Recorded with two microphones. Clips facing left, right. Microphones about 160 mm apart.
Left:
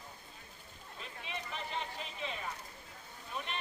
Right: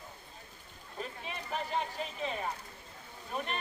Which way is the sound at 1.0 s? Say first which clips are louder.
Right 4 dB; 45° right (ahead or behind).